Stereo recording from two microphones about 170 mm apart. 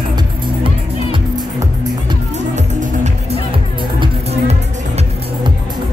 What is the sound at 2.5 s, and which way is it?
Music, 45° right (ahead or behind).